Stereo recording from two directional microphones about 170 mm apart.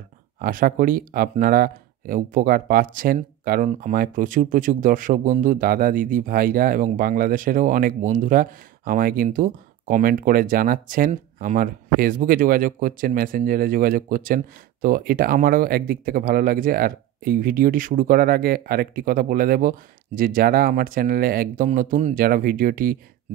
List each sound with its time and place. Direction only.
0.4 s speech: 55° right (ahead or behind)
21.6 s speech: 50° right (ahead or behind)